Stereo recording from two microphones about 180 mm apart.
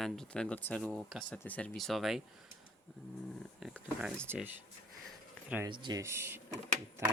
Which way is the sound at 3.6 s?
Centre (ahead or behind).